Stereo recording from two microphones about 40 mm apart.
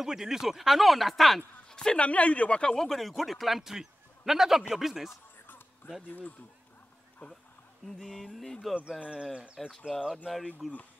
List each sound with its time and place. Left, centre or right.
0.0 s a man's voice: centre
1.7 s a sound: centre
2.0 s speech: left
2.7 s a man's voice: centre
6.0 s speech: left
7.8 s music: centre
9.0 s speech: right
10.0 s a man's voice: centre